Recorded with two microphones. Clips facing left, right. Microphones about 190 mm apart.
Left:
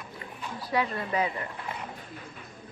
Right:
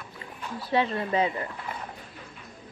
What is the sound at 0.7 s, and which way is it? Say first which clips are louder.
Speech: right 3 dB; 25° right (ahead or behind).